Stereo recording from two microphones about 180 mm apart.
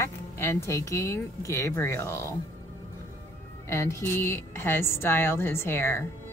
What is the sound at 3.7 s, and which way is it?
A woman's voice, 15° left (ahead or behind).